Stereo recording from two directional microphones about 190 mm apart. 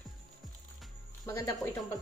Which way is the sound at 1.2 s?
20° left (ahead or behind).